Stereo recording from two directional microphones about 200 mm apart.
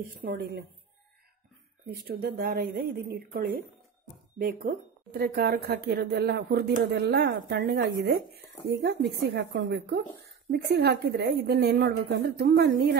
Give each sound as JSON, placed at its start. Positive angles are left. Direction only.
{"t": 0.0, "sound": "speech", "side_deg": -45}
{"t": 2.0, "sound": "speech", "side_deg": -50}